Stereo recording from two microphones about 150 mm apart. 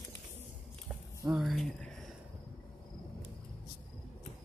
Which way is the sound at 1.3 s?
Centre (ahead or behind).